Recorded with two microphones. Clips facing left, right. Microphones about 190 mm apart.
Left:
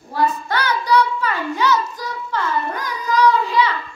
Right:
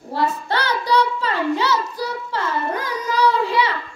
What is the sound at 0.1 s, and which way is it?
Child singing, 30° right (ahead or behind).